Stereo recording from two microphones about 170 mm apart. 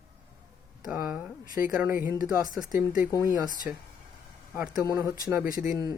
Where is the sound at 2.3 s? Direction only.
20° right (ahead or behind).